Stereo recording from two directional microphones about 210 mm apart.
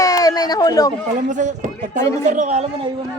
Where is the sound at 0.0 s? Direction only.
15° left (ahead or behind).